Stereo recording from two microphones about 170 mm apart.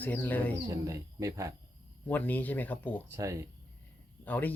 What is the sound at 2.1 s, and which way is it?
Speech, 10° left (ahead or behind).